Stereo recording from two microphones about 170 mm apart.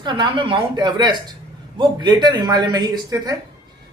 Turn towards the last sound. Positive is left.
turn(degrees=-25)  # may be behind; listen again after turning